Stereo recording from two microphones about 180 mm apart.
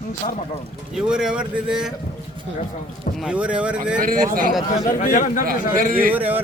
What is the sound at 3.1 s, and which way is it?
Speech, 5° right (ahead or behind).